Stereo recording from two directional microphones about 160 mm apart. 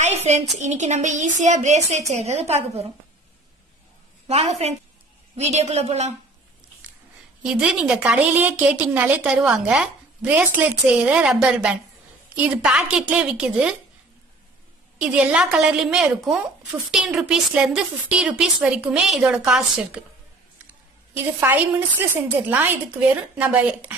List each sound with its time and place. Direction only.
0.0 s a sound: 45° right (ahead or behind)
0.6 s a woman's voice: 45° right (ahead or behind)
4.3 s a woman's voice: 40° right (ahead or behind)
7.4 s a woman's voice: 5° right (ahead or behind)
15.0 s a woman's voice: 5° right (ahead or behind)
21.4 s a woman's voice: 10° right (ahead or behind)